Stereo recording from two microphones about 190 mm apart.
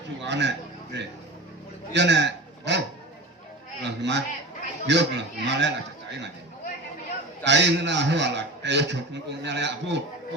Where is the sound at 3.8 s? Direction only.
65° right (ahead or behind).